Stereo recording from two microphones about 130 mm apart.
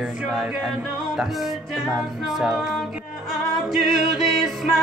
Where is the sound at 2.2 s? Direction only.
5° right (ahead or behind).